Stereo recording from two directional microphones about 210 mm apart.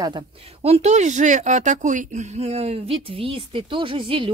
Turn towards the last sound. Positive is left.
turn(degrees=-25)  # may be behind; listen again after turning